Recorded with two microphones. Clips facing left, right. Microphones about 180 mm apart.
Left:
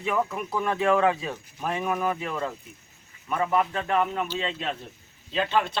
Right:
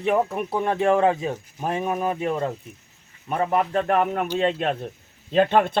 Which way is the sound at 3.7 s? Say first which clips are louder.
Right 4 dB; 50° right (ahead or behind).